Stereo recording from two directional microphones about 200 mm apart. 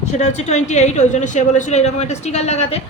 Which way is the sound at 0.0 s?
35° left (ahead or behind).